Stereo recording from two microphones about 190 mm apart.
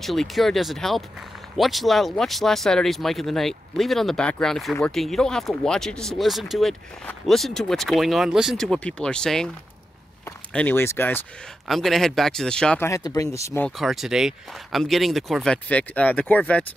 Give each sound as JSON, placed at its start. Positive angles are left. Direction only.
{"t": 0.0, "sound": "speech", "side_deg": 0}
{"t": 10.5, "sound": "speech", "side_deg": 10}
{"t": 11.6, "sound": "speech", "side_deg": 0}
{"t": 13.7, "sound": "speech", "side_deg": 0}